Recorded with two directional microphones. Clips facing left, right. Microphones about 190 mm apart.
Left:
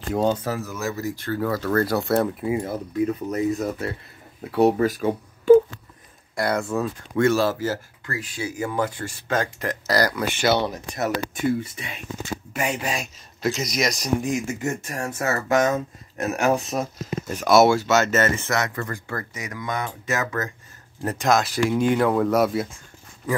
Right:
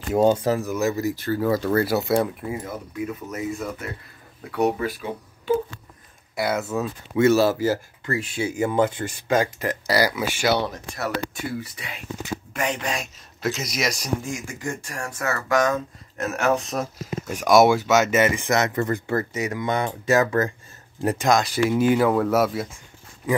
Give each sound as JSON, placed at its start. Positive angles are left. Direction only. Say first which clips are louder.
{"t": 0.1, "sound": "speech", "louder": "right 4 dB", "side_deg": -10}
{"t": 3.3, "sound": "speech", "louder": "left 5 dB", "side_deg": 35}
{"t": 4.7, "sound": "speech", "louder": "left 6 dB", "side_deg": 45}
{"t": 6.3, "sound": "speech", "louder": "left 1 dB", "side_deg": -5}
{"t": 8.1, "sound": "speech", "louder": "right 4 dB", "side_deg": -25}
{"t": 11.0, "sound": "speech", "louder": "left 3 dB", "side_deg": 20}
{"t": 12.5, "sound": "speech", "louder": "left 1 dB", "side_deg": 10}
{"t": 14.2, "sound": "speech", "louder": "left 5 dB", "side_deg": 20}
{"t": 17.3, "sound": "speech", "louder": "even", "side_deg": -15}
{"t": 21.2, "sound": "speech", "louder": "left 1 dB", "side_deg": 0}